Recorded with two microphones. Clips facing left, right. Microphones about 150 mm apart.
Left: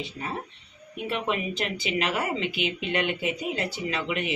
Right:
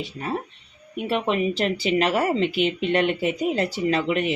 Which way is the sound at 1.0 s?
35° right (ahead or behind).